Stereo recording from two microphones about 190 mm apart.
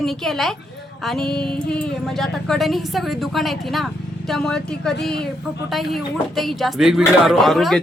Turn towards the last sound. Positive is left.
turn(degrees=0)  # may be behind; listen again after turning